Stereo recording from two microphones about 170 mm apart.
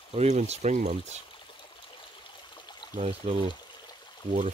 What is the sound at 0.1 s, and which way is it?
Speech, 40° right (ahead or behind).